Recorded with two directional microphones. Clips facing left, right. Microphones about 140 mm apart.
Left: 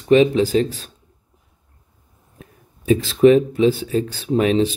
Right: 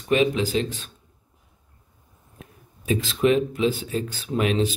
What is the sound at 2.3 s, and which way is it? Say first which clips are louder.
A man's voice: left 2 dB; 35° left (ahead or behind).